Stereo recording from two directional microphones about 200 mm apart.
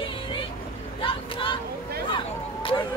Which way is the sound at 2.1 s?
25° left (ahead or behind).